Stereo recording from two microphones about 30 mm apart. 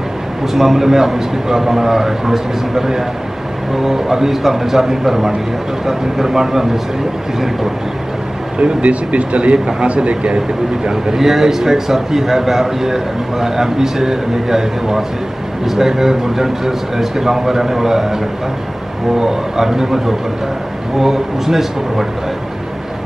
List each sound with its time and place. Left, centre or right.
0.5 s a man's voice: centre
8.5 s speech: right
11.1 s a man's voice: centre